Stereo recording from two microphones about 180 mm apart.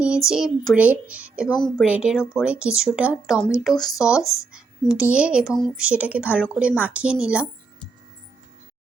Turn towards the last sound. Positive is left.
turn(degrees=-5)  # may be behind; listen again after turning